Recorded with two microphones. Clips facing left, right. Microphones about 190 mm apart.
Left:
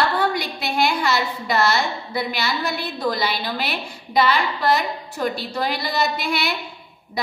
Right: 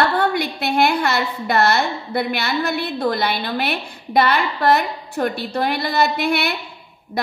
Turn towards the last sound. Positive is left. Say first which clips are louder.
# right 4 dB
turn(degrees=-55)  # may be behind; listen again after turning